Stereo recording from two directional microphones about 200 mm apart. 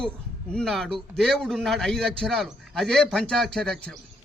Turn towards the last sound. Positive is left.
turn(degrees=5)  # may be behind; listen again after turning